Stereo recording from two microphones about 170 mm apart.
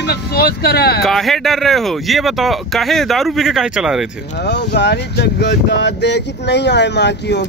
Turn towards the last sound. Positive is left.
turn(degrees=90)